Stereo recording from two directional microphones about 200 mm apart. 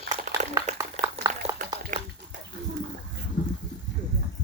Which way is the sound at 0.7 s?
35° right (ahead or behind).